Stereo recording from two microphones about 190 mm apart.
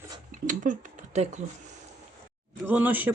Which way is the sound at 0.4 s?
40° right (ahead or behind).